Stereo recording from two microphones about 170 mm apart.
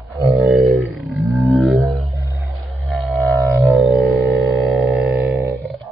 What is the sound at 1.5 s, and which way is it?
Whale vocalization, centre (ahead or behind).